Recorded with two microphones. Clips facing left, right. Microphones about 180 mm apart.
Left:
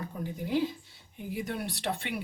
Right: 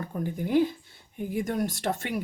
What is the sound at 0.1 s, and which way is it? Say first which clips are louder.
Speech: right 6 dB; 55° right (ahead or behind).